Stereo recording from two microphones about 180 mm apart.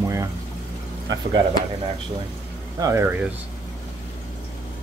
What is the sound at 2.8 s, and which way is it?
Speech, 15° right (ahead or behind).